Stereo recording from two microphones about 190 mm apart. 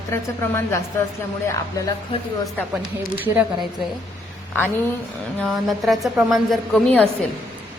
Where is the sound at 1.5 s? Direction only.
15° left (ahead or behind).